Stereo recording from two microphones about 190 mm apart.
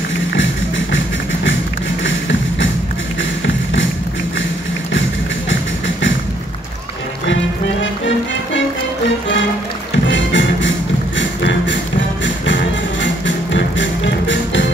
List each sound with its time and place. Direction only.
0.4 s music: 80° left
10.0 s music: 75° left (ahead or behind)
13.0 s music: 75° left (ahead or behind)